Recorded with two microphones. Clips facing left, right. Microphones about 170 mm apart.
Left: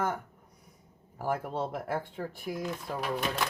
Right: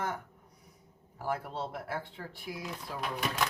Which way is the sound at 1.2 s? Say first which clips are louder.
Left 4 dB; 50° left (ahead or behind).